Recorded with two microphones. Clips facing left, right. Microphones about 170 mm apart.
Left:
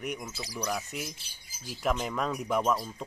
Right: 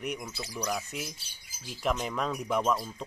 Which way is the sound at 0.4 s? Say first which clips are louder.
Even; 10° left (ahead or behind).